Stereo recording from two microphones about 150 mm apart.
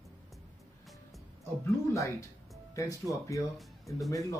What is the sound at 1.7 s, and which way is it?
Speech, 20° left (ahead or behind).